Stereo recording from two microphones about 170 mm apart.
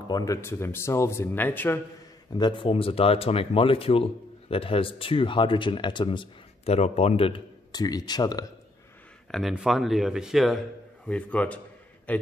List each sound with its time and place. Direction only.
0.1 s speech: 20° left (ahead or behind)
2.3 s speech: 25° left (ahead or behind)
9.3 s a man's voice: centre (ahead or behind)